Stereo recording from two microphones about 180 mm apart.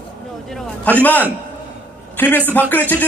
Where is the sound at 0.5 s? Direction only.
5° left (ahead or behind).